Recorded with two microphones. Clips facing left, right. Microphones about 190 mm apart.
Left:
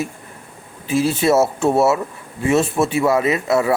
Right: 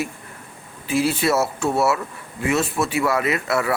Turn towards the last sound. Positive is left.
turn(degrees=20)  # may be behind; listen again after turning